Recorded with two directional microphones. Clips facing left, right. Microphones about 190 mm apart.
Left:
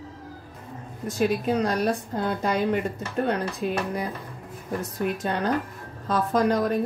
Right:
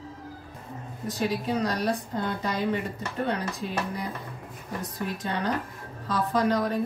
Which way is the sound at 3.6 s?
70° left (ahead or behind).